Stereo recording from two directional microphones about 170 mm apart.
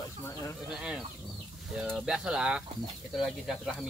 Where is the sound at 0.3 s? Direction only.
15° left (ahead or behind).